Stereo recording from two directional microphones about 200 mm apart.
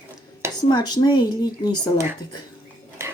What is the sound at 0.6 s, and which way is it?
A woman's voice, 20° left (ahead or behind).